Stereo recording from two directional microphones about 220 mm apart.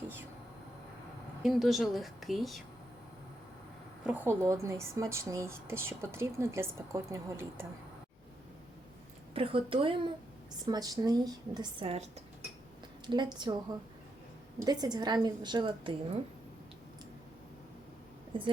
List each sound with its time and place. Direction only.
1.4 s a woman's voice: centre (ahead or behind)
4.0 s speech: 10° right (ahead or behind)
9.3 s a woman's voice: 25° right (ahead or behind)
13.1 s a woman's voice: 20° right (ahead or behind)
14.6 s a woman's voice: 20° right (ahead or behind)
18.3 s a woman's voice: 20° right (ahead or behind)